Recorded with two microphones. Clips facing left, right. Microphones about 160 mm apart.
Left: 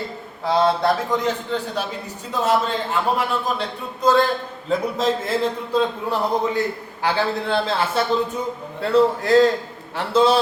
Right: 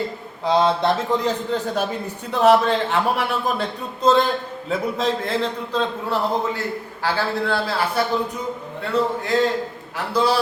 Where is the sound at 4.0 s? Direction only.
25° right (ahead or behind).